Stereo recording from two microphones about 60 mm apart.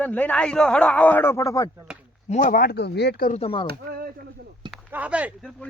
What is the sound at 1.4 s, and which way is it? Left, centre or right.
Speech, left.